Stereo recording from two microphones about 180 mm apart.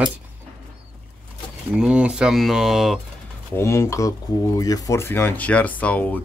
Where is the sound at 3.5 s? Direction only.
15° left (ahead or behind).